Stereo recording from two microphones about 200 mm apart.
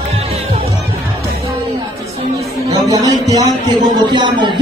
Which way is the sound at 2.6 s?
15° right (ahead or behind).